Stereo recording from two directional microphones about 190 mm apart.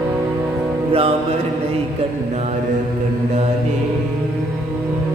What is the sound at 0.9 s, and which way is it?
Mantra, 30° right (ahead or behind).